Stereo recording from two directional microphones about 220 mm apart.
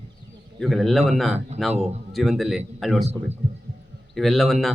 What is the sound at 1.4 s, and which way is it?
Speech, 30° right (ahead or behind).